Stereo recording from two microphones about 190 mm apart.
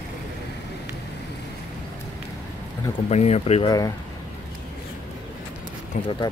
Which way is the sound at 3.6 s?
20° left (ahead or behind).